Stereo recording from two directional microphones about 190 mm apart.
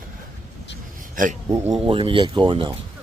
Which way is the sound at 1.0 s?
45° right (ahead or behind).